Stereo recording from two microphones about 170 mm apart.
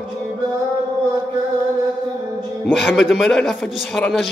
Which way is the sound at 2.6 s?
Centre (ahead or behind).